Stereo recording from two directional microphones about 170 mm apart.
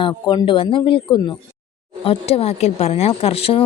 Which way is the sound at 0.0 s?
30° left (ahead or behind).